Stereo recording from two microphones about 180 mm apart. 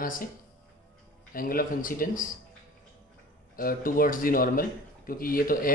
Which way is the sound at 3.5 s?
50° left (ahead or behind).